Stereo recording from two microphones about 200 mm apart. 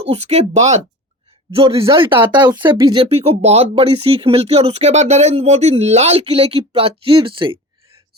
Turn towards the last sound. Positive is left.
turn(degrees=-25)  # may be behind; listen again after turning